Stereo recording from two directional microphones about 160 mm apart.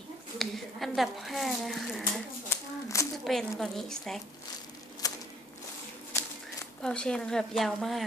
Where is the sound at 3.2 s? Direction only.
Centre (ahead or behind).